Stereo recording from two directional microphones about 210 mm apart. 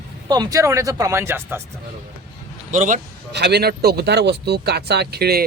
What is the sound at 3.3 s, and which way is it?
Speech, 50° right (ahead or behind).